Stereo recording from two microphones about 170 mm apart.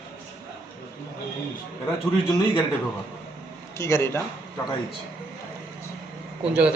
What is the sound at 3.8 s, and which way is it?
Speech, 15° left (ahead or behind).